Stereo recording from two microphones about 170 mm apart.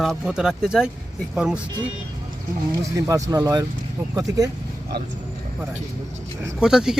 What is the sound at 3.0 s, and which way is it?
Speech, 20° right (ahead or behind).